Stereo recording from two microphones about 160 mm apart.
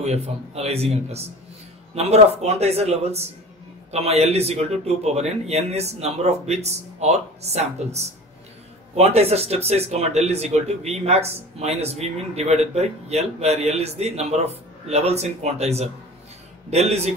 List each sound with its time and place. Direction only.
0.0 s a man's voice: 40° right (ahead or behind)